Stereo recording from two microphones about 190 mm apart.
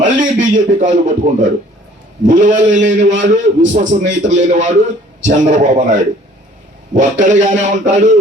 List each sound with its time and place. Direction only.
0.0 s a man's voice: 40° right (ahead or behind)
6.9 s a man's voice: 40° right (ahead or behind)